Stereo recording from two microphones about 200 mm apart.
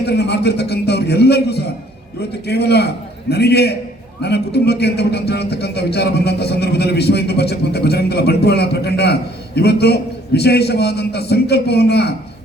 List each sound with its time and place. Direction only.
0.0 s a man's voice: 55° left (ahead or behind)